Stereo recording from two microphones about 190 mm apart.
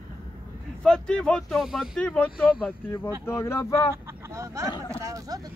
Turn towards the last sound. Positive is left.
turn(degrees=-15)  # may be behind; listen again after turning